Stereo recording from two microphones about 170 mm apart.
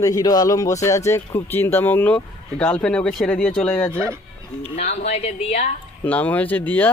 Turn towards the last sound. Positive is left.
turn(degrees=10)  # may be behind; listen again after turning